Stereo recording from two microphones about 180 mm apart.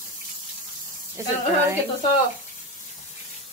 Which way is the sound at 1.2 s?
15° right (ahead or behind).